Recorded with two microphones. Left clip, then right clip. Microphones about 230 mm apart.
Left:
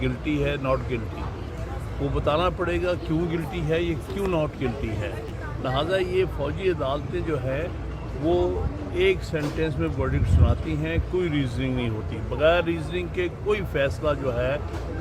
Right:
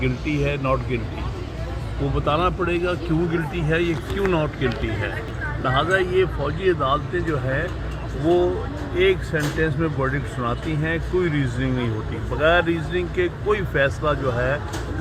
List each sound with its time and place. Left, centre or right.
0.0 s speech: centre
2.1 s speech: centre
9.0 s speech: centre